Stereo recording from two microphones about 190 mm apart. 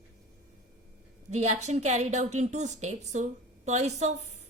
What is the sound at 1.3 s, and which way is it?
A woman's voice, 35° right (ahead or behind).